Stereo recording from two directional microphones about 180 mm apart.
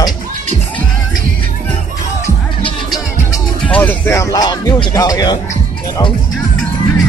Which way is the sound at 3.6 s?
10° left (ahead or behind).